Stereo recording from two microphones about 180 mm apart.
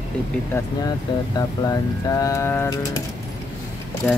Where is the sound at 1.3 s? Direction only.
20° left (ahead or behind).